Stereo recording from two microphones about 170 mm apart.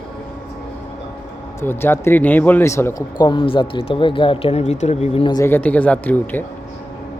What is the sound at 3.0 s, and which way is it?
Speech, 25° left (ahead or behind).